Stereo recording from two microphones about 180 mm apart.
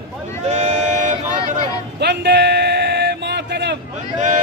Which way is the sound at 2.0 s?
70° right (ahead or behind).